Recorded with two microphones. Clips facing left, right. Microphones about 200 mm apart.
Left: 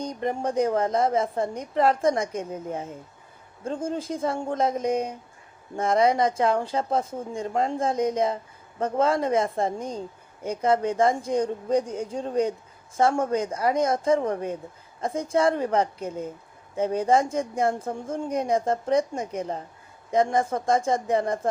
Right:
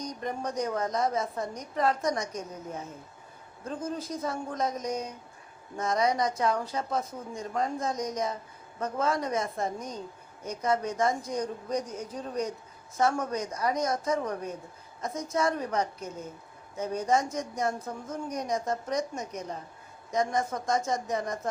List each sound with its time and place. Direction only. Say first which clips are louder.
0.0 s speech: left 6 dB; 30° left (ahead or behind)